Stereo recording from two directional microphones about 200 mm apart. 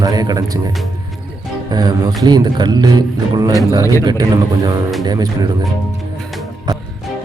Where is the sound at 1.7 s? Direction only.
20° right (ahead or behind).